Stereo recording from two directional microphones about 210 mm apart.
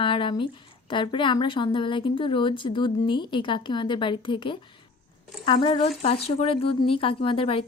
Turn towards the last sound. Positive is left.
turn(degrees=25)  # may be behind; listen again after turning